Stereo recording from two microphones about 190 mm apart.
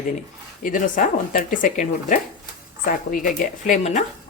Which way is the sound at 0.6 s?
45° left (ahead or behind).